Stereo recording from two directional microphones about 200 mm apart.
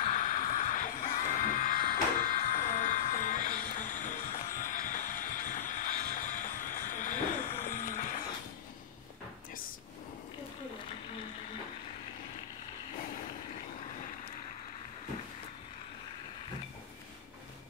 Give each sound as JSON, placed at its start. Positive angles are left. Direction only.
{"t": 0.0, "sound": "music", "side_deg": 40}